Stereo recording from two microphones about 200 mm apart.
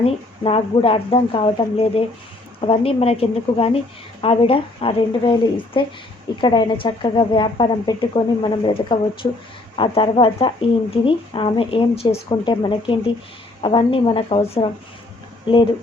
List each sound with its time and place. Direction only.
0.0 s a woman's voice: 30° left (ahead or behind)